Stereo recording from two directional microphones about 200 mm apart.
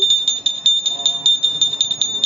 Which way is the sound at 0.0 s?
30° right (ahead or behind).